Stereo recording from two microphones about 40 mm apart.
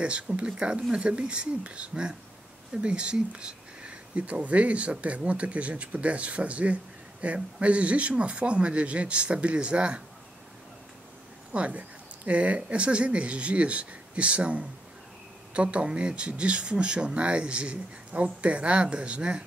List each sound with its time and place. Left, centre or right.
0.0 s speech: right
11.5 s speech: right